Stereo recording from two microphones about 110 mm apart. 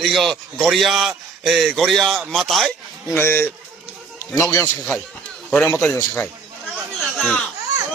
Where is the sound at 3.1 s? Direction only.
20° left (ahead or behind).